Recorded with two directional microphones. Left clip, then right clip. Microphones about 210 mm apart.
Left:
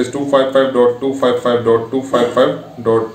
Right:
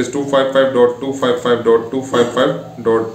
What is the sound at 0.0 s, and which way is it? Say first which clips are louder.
Speech: left 1 dB; 10° right (ahead or behind).